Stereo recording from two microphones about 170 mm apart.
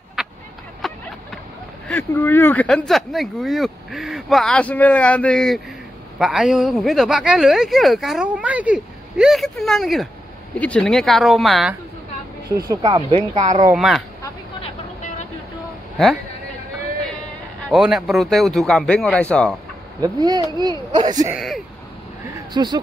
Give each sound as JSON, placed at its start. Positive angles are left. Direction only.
{"t": 0.2, "sound": "a sound", "side_deg": 0}
{"t": 0.8, "sound": "vehicle", "side_deg": 0}
{"t": 1.9, "sound": "speech", "side_deg": 15}
{"t": 12.4, "sound": "speech", "side_deg": -20}
{"t": 13.3, "sound": "speech", "side_deg": -45}
{"t": 13.7, "sound": "speech", "side_deg": 0}
{"t": 14.6, "sound": "vehicle", "side_deg": 45}
{"t": 17.6, "sound": "speech", "side_deg": -5}
{"t": 20.0, "sound": "speech", "side_deg": -25}
{"t": 22.5, "sound": "speech", "side_deg": -25}